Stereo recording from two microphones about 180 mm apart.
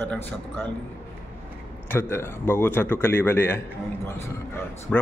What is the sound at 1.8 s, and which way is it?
A man's voice, 15° left (ahead or behind).